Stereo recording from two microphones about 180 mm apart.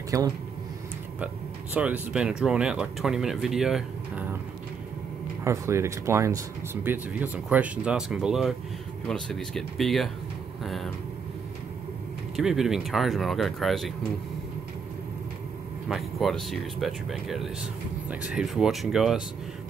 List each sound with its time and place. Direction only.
0.1 s speech: 20° right (ahead or behind)
5.4 s speech: 15° right (ahead or behind); by 10.1 s centre (ahead or behind)
10.6 s vehicle: centre (ahead or behind)
12.4 s speech: centre (ahead or behind)
15.9 s speech: centre (ahead or behind)